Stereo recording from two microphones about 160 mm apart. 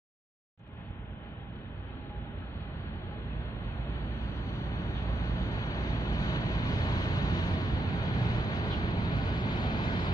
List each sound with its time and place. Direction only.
4.6 s vehicle: 15° left (ahead or behind)